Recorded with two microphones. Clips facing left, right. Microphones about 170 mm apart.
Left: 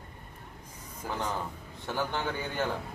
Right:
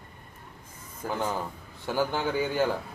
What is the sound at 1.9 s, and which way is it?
Speech, 5° right (ahead or behind).